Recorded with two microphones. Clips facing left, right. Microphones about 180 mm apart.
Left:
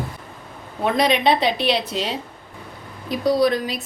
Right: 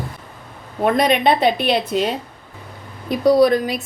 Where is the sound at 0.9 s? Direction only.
50° right (ahead or behind).